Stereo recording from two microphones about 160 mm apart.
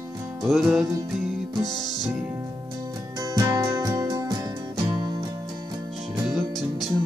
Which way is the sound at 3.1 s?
20° right (ahead or behind).